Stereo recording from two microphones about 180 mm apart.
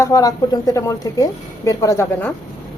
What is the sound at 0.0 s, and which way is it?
A woman's voice, 20° left (ahead or behind).